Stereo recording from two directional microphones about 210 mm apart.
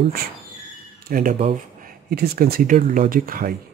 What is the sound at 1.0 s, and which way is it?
Speech, 40° right (ahead or behind).